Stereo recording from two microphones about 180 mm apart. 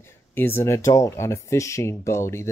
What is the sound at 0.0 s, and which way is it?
Speech, 10° left (ahead or behind).